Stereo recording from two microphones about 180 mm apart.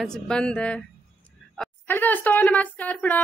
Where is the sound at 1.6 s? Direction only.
10° left (ahead or behind).